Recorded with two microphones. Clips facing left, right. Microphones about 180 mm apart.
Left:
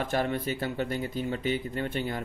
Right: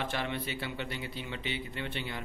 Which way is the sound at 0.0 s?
45° left (ahead or behind).